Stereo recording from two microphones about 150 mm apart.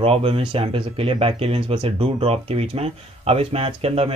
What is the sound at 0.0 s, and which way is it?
Speech, 40° right (ahead or behind).